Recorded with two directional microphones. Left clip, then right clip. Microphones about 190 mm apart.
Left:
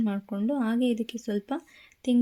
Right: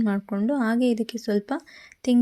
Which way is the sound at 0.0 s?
25° right (ahead or behind).